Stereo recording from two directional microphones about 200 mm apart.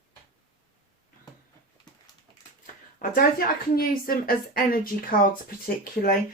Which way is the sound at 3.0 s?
45° left (ahead or behind).